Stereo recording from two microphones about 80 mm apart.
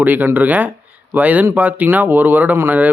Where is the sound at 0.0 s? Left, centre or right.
Right.